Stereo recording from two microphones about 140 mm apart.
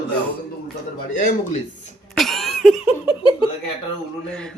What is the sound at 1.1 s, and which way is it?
Speech, 65° left (ahead or behind).